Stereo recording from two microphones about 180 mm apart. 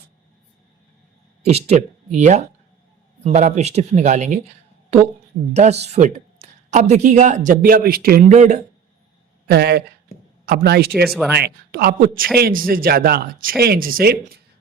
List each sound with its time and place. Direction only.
1.4 s speech: 35° right (ahead or behind)
5.5 s speech: 40° right (ahead or behind); by 8.4 s 55° right (ahead or behind)
8.4 s speech: 40° right (ahead or behind)
9.5 s speech: 65° right (ahead or behind)